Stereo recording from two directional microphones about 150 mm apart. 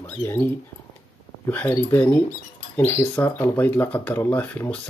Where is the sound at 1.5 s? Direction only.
15° left (ahead or behind).